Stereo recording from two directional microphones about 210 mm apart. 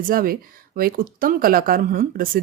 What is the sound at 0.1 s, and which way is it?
Speech, 45° right (ahead or behind).